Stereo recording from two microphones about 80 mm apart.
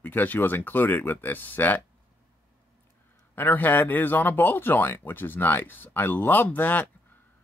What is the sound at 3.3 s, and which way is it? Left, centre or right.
Speech, left.